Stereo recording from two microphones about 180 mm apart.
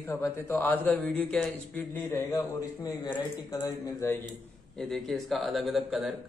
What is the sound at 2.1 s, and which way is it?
A man's voice, 20° left (ahead or behind).